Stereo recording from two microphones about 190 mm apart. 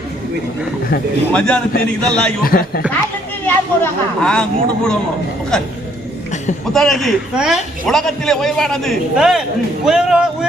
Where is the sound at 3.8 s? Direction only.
5° left (ahead or behind).